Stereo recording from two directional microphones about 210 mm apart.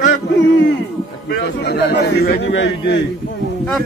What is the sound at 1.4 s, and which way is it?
A man's voice, 50° left (ahead or behind).